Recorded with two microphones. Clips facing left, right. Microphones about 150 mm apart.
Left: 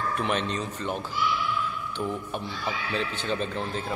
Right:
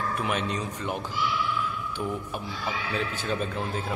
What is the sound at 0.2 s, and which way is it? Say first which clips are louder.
Speech: left 2 dB; 10° right (ahead or behind).